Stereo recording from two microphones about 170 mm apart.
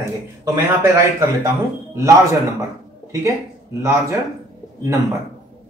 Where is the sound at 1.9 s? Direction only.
20° right (ahead or behind).